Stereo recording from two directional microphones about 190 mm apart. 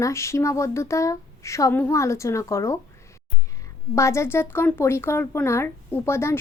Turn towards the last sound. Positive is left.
turn(degrees=15)  # may be behind; listen again after turning